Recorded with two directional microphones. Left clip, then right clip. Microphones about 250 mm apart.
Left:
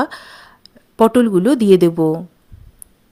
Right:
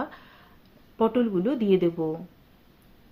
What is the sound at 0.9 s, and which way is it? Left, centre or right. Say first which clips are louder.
A woman's voice: left 11 dB; left.